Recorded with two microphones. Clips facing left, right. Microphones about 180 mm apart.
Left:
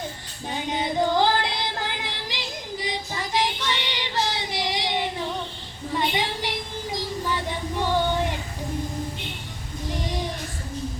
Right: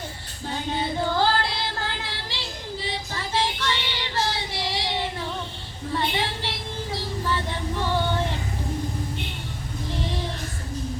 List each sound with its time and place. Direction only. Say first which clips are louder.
0.4 s female singing: even; 15° left (ahead or behind)
5.9 s a sound: left 1 dB; 15° left (ahead or behind)
6.9 s child singing: even; 15° left (ahead or behind)
9.9 s child singing: left 1 dB; 15° left (ahead or behind)